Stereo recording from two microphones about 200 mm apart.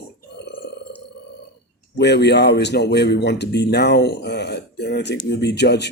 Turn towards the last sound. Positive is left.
turn(degrees=55)  # may be behind; listen again after turning